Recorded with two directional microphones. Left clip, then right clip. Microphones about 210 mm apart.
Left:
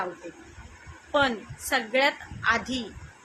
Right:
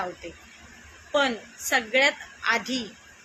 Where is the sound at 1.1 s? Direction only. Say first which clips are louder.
Even; 15° left (ahead or behind).